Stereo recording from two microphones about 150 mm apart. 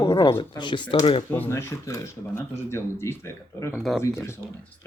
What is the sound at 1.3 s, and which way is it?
Speech, 15° left (ahead or behind).